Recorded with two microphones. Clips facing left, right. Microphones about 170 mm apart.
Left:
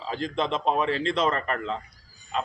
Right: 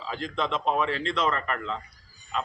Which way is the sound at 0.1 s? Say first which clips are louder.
Left 2 dB; 30° left (ahead or behind).